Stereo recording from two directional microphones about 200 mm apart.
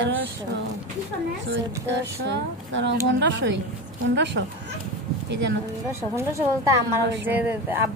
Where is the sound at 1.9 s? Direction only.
60° right (ahead or behind).